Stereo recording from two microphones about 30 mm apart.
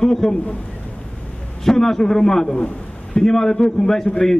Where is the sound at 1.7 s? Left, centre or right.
Centre.